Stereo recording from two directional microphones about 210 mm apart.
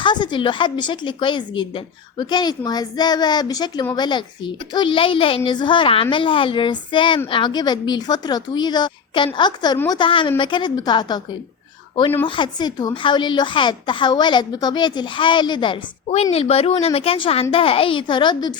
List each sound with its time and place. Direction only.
0.0 s a woman's voice: 20° left (ahead or behind)
12.2 s a woman's voice: 20° left (ahead or behind)